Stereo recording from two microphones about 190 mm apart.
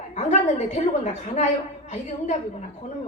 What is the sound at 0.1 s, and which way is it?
A woman's voice, 40° left (ahead or behind).